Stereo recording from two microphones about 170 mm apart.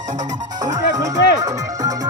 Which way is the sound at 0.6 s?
20° right (ahead or behind).